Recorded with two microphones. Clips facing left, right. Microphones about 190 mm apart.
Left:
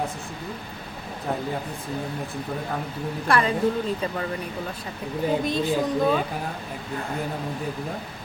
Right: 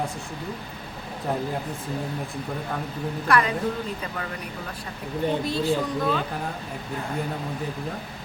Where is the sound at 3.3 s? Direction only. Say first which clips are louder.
Even; 30° left (ahead or behind).